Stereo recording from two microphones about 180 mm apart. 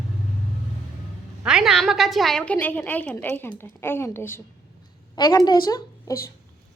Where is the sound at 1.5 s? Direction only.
Centre (ahead or behind).